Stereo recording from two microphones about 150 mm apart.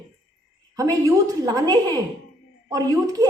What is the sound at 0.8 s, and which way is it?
A woman's voice, 25° right (ahead or behind).